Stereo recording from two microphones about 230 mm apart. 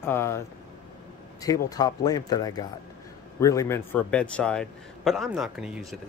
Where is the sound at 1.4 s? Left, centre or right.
Centre.